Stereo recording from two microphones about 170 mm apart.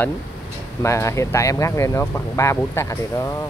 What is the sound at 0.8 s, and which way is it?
Speech, 15° left (ahead or behind).